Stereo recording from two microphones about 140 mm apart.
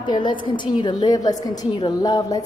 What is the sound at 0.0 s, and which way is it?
A woman's voice, 35° left (ahead or behind).